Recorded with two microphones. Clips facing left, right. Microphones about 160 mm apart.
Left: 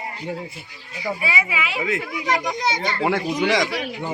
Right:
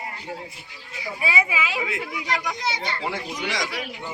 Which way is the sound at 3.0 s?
65° left (ahead or behind).